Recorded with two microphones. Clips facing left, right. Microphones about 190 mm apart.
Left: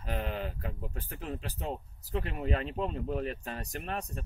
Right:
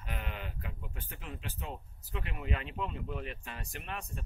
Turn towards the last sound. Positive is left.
turn(degrees=40)  # may be behind; listen again after turning